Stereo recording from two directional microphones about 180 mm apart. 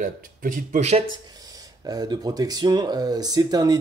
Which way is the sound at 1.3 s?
20° right (ahead or behind).